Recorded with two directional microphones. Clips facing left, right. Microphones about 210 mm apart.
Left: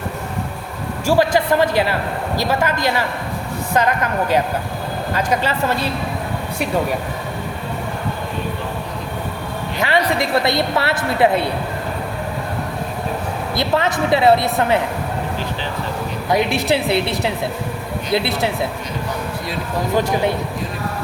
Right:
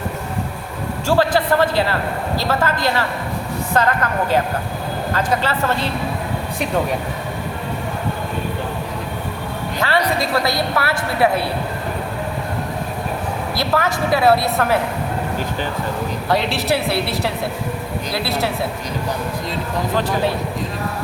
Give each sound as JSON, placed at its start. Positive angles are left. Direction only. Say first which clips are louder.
{"t": 1.0, "sound": "a man's voice", "louder": "left 1 dB", "side_deg": 10}
{"t": 9.8, "sound": "a woman's voice", "louder": "left 1 dB", "side_deg": 20}
{"t": 13.6, "sound": "a woman's voice", "louder": "left 2 dB", "side_deg": 20}
{"t": 16.3, "sound": "a woman's voice", "louder": "left 2 dB", "side_deg": 20}